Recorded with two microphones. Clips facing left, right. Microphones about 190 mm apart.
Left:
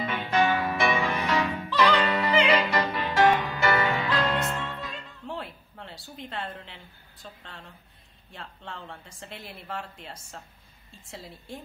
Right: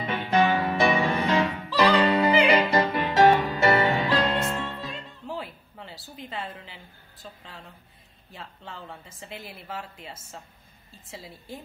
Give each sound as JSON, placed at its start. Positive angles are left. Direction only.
{"t": 0.0, "sound": "music", "side_deg": -30}
{"t": 5.2, "sound": "a sound", "side_deg": 0}
{"t": 8.3, "sound": "speech", "side_deg": 0}